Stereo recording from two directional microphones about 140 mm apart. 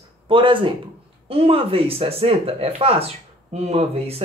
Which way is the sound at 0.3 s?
40° right (ahead or behind).